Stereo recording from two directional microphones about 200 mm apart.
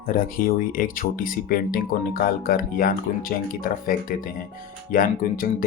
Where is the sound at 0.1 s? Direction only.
45° left (ahead or behind).